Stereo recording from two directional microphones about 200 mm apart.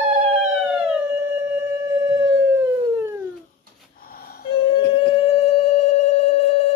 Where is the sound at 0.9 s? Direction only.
10° right (ahead or behind).